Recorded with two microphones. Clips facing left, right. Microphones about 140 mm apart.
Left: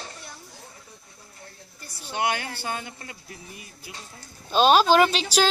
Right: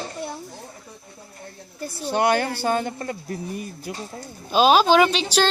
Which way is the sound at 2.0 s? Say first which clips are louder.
Right 7 dB; 40° right (ahead or behind).